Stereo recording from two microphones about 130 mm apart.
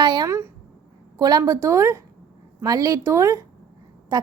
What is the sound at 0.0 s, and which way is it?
A woman's voice, 35° right (ahead or behind).